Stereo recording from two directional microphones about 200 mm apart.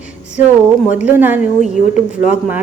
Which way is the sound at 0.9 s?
10° right (ahead or behind).